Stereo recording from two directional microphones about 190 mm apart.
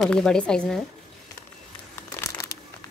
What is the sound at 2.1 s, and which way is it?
Crumpling, 15° left (ahead or behind).